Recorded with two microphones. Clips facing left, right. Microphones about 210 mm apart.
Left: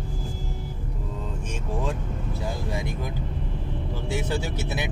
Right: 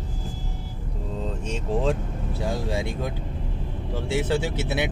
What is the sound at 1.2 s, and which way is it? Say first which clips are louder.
Vehicle: right 6 dB; 30° right (ahead or behind).